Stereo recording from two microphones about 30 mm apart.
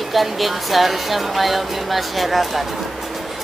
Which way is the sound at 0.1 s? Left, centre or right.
Centre.